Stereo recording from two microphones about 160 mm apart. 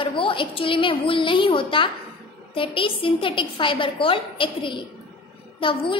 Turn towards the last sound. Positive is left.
turn(degrees=35)  # may be behind; listen again after turning